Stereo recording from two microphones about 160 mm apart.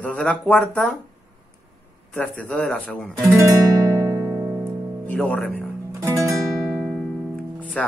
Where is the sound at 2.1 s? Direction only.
10° left (ahead or behind).